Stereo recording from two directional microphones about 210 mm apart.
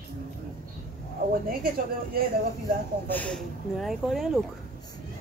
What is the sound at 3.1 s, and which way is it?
Speech, 5° left (ahead or behind).